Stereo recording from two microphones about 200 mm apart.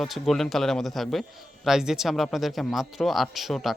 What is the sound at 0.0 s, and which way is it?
Speech, centre (ahead or behind).